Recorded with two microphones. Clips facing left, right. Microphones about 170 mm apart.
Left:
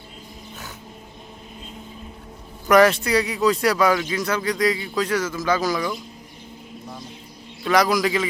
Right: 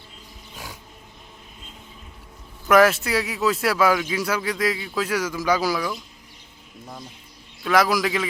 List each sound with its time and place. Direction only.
0.5 s a sound: 10° right (ahead or behind)
2.6 s a man's voice: centre (ahead or behind)
7.6 s a man's voice: centre (ahead or behind)